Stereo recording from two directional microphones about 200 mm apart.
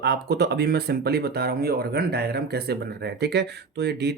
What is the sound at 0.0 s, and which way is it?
Speech, 55° right (ahead or behind).